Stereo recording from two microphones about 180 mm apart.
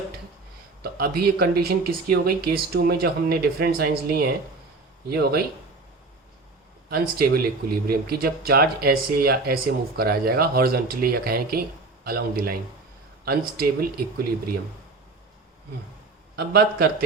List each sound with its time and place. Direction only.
0.8 s speech: 60° right (ahead or behind)
6.9 s speech: 55° right (ahead or behind)
13.6 s speech: 55° right (ahead or behind)
16.3 s speech: 65° right (ahead or behind)